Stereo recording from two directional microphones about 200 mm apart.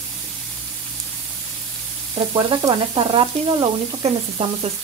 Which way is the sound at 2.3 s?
25° right (ahead or behind).